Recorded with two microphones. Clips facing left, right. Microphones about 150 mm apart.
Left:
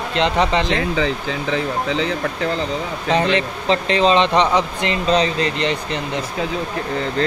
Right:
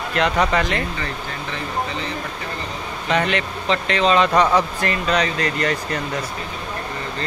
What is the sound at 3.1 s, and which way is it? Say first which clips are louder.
Speech: left 3 dB; 30° left (ahead or behind).